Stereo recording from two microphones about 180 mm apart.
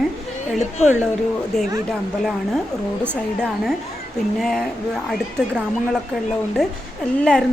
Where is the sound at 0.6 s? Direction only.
40° left (ahead or behind).